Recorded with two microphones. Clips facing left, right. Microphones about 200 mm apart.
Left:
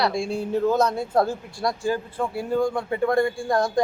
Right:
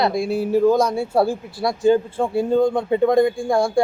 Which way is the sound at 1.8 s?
25° right (ahead or behind).